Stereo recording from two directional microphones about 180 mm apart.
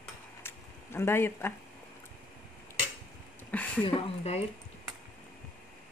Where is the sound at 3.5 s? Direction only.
10° left (ahead or behind).